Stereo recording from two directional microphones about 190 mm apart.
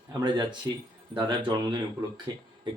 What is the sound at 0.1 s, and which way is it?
Speech, 20° right (ahead or behind).